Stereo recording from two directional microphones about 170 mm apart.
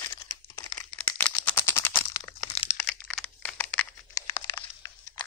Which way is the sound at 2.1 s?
25° left (ahead or behind).